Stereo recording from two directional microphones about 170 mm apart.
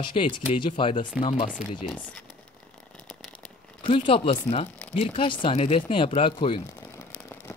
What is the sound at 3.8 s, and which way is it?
Speech, 30° left (ahead or behind).